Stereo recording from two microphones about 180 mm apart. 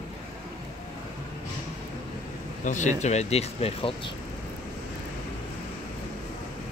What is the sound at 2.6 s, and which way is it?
Speech, 45° left (ahead or behind).